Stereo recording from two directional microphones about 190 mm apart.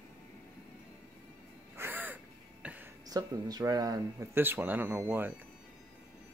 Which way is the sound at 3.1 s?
20° right (ahead or behind).